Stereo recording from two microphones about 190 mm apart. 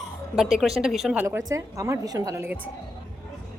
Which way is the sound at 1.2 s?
15° right (ahead or behind).